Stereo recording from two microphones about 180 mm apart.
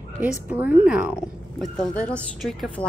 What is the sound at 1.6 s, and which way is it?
Speech, 5° left (ahead or behind).